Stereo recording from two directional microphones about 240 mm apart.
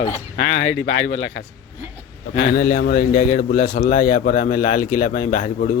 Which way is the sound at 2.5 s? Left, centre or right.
Left.